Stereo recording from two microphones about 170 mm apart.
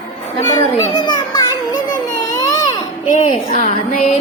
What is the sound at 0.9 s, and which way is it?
Children playing, 30° left (ahead or behind).